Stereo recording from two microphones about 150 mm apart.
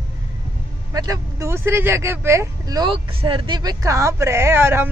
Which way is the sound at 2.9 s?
35° right (ahead or behind).